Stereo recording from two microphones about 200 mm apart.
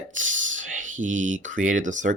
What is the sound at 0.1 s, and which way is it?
Speech, 40° right (ahead or behind).